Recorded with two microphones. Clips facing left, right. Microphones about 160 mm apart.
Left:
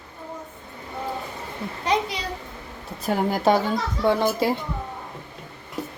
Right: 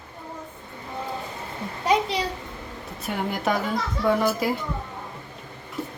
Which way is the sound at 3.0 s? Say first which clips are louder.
Left 5 dB; 35° left (ahead or behind).